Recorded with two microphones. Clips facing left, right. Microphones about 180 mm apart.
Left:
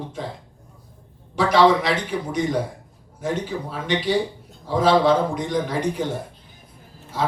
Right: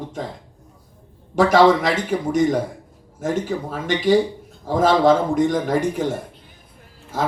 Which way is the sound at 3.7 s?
50° right (ahead or behind).